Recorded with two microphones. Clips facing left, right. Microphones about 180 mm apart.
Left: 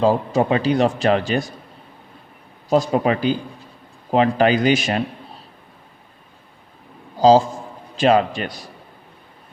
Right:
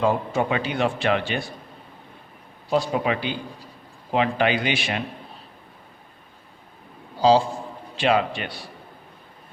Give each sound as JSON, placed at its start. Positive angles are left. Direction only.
{"t": 0.0, "sound": "a man's voice", "side_deg": 35}
{"t": 2.6, "sound": "a man's voice", "side_deg": 45}
{"t": 7.2, "sound": "a man's voice", "side_deg": 45}